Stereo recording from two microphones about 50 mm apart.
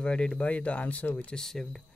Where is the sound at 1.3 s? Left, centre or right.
Centre.